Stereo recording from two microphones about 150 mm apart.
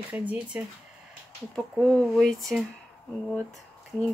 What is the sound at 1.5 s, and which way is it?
Speech, 5° left (ahead or behind).